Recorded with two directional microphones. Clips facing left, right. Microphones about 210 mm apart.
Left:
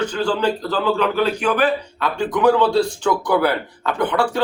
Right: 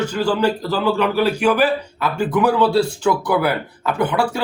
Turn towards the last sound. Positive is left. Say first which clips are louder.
# right 1 dB
turn(degrees=-10)  # may be behind; listen again after turning